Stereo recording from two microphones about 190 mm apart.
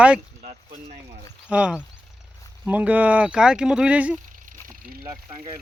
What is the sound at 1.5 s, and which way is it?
Speech, 5° right (ahead or behind).